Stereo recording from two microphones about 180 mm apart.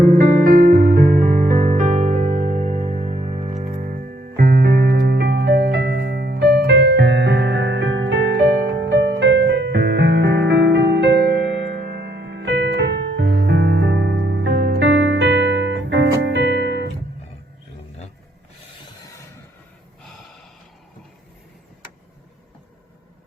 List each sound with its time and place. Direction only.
0.0 s music: 60° right (ahead or behind); by 16.0 s 85° right
16.2 s music: 75° right (ahead or behind)